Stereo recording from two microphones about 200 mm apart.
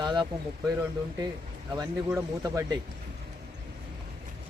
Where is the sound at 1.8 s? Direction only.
15° right (ahead or behind).